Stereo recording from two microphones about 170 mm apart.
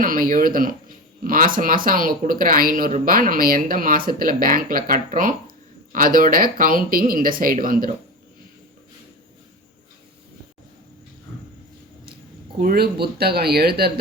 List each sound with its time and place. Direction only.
0.0 s speech: 55° right (ahead or behind)
12.5 s speech: 60° right (ahead or behind)